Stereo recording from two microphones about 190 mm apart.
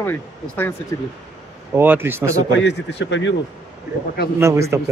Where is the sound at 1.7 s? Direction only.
10° right (ahead or behind).